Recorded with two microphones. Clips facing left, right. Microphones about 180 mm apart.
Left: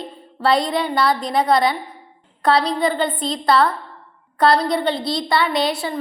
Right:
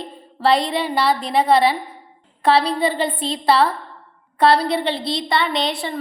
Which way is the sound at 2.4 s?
30° right (ahead or behind).